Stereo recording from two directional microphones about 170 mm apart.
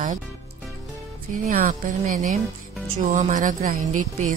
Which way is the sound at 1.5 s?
50° right (ahead or behind).